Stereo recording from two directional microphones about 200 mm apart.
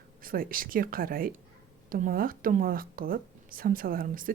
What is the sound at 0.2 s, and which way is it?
A woman's voice, 45° right (ahead or behind).